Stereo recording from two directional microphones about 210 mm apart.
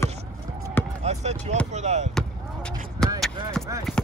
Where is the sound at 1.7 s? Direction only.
35° right (ahead or behind).